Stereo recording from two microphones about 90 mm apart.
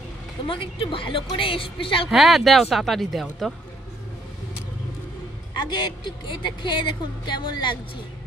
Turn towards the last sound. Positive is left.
turn(degrees=60)  # may be behind; listen again after turning